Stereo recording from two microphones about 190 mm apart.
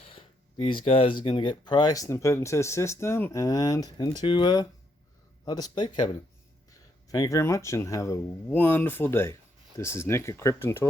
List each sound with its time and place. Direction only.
0.0 s speech: 25° left (ahead or behind)